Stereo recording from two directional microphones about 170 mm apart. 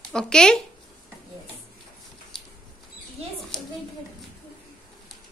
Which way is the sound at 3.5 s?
5° left (ahead or behind).